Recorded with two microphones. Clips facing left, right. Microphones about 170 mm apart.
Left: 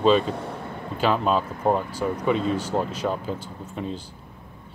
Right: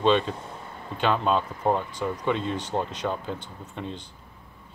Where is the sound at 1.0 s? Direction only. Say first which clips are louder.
Left 2 dB; 5° left (ahead or behind).